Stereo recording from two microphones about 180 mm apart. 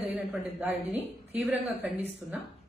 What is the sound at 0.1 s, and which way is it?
A woman's voice, 10° right (ahead or behind).